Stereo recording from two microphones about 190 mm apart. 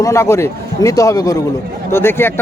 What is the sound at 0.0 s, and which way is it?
Speech, 15° left (ahead or behind).